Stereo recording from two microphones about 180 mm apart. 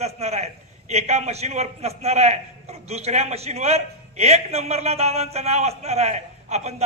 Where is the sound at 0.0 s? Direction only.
35° right (ahead or behind).